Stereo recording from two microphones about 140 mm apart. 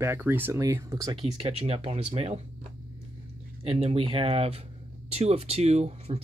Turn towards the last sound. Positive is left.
turn(degrees=-50)  # may be behind; listen again after turning